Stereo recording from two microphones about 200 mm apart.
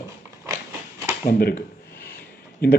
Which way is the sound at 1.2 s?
45° left (ahead or behind).